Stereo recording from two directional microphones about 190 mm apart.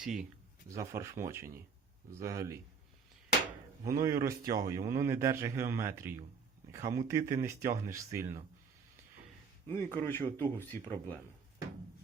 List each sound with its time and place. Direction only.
0.0 s speech: 5° right (ahead or behind)
0.7 s speech: 15° right (ahead or behind)
3.8 s speech: 15° right (ahead or behind)
9.6 s speech: 10° left (ahead or behind)